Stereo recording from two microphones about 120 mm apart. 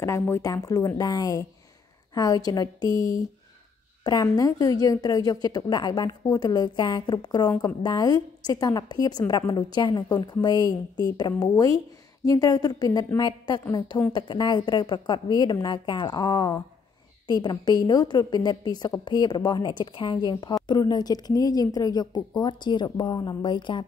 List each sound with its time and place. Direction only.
0.0 s a woman's voice: 25° left (ahead or behind); by 23.8 s 40° left (ahead or behind)